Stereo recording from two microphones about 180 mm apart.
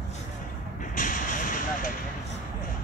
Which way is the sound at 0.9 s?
45° left (ahead or behind).